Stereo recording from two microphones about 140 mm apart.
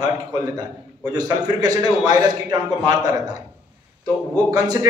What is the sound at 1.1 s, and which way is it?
A man's voice, 25° right (ahead or behind).